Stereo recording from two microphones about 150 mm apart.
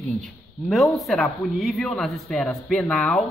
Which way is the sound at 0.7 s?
Centre (ahead or behind).